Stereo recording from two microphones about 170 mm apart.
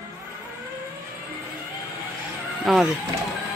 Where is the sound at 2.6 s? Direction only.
Centre (ahead or behind).